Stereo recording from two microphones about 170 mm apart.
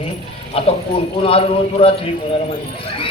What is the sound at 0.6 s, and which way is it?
A man's voice, 35° left (ahead or behind).